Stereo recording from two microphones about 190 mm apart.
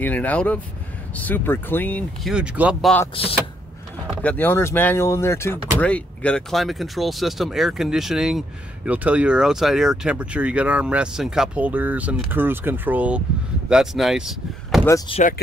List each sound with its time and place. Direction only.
0.0 s speech: 10° left (ahead or behind)
2.3 s speech: 5° right (ahead or behind)
3.2 s speech: 30° left (ahead or behind)
4.1 s speech: 5° left (ahead or behind)
15.0 s speech: 35° left (ahead or behind)